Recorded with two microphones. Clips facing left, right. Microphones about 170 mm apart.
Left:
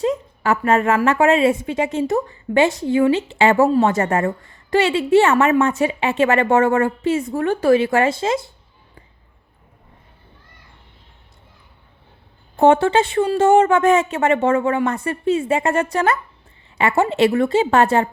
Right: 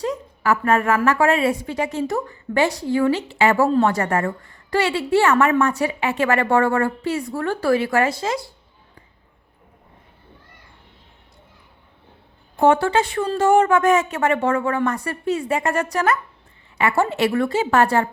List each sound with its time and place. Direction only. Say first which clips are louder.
0.0 s a woman's voice: left 3 dB; 25° left (ahead or behind)
12.5 s a woman's voice: left 3 dB; 25° left (ahead or behind)